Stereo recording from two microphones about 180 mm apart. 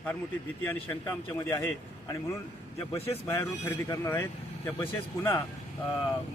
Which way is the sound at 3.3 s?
15° left (ahead or behind).